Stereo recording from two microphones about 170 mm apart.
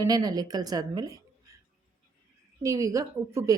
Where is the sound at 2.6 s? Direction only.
20° right (ahead or behind).